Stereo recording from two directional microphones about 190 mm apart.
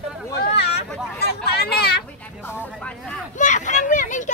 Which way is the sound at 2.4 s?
10° left (ahead or behind).